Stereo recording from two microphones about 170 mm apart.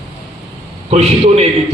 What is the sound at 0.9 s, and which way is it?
Speech, 40° right (ahead or behind).